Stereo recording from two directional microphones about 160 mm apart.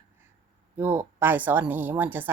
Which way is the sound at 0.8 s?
15° right (ahead or behind).